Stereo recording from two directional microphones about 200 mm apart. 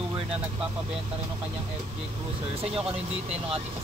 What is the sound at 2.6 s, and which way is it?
Speech, 30° right (ahead or behind).